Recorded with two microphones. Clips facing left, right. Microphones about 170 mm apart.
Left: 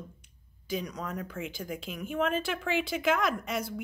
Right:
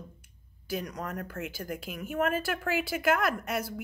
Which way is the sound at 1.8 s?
5° right (ahead or behind).